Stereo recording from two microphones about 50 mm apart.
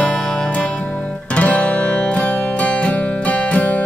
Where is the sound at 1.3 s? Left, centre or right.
Left.